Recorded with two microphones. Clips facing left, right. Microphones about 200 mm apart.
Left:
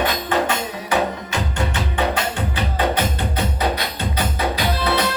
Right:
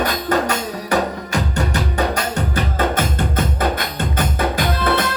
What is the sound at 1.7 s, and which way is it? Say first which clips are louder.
Music: right 1 dB; 40° right (ahead or behind).